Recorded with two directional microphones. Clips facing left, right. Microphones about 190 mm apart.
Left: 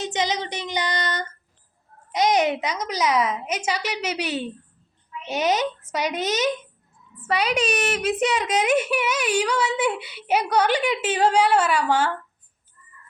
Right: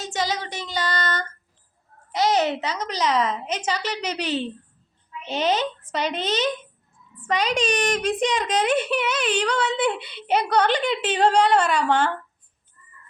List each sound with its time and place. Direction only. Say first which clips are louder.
0.0 s child singing: left 2 dB; 20° left (ahead or behind)
2.1 s a woman's voice: left 1 dB; 15° left (ahead or behind)